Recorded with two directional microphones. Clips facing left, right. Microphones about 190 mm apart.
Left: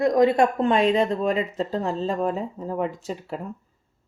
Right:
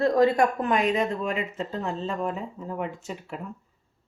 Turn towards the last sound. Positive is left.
turn(degrees=35)  # may be behind; listen again after turning